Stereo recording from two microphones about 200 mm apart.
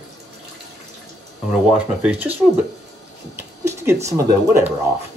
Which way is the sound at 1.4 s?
5° right (ahead or behind).